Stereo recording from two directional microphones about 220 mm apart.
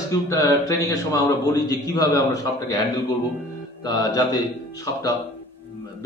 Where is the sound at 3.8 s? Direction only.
15° left (ahead or behind).